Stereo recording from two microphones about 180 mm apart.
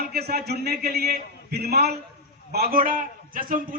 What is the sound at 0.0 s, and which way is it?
A man's voice, 60° right (ahead or behind).